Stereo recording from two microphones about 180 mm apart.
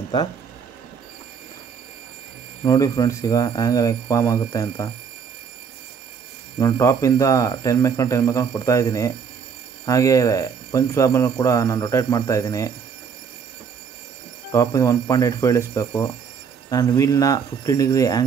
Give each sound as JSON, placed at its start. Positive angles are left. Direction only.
{"t": 2.6, "sound": "speech", "side_deg": 20}
{"t": 6.6, "sound": "speech", "side_deg": 15}
{"t": 14.5, "sound": "speech", "side_deg": 15}